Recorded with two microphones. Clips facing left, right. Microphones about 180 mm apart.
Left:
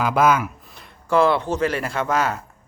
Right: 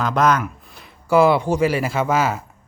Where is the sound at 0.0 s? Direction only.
5° left (ahead or behind).